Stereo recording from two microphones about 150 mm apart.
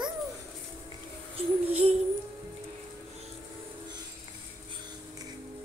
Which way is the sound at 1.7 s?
45° right (ahead or behind).